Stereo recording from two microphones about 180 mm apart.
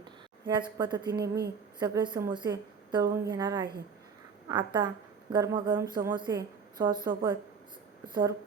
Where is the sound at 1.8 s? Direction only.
25° right (ahead or behind).